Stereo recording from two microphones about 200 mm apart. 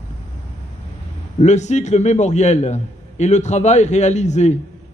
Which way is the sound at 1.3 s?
35° left (ahead or behind).